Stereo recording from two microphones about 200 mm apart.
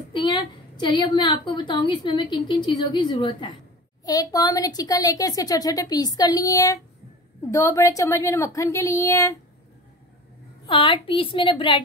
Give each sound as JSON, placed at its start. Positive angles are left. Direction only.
{"t": 0.1, "sound": "a woman's voice", "side_deg": 25}
{"t": 10.7, "sound": "a woman's voice", "side_deg": 25}